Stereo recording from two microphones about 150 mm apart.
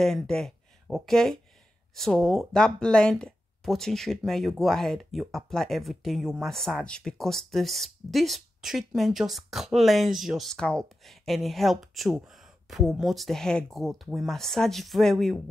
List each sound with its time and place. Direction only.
0.0 s speech: 5° left (ahead or behind)